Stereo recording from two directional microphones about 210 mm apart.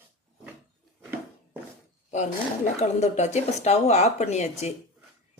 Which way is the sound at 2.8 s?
35° left (ahead or behind).